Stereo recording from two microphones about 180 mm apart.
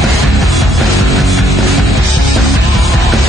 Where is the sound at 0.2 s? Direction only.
Centre (ahead or behind).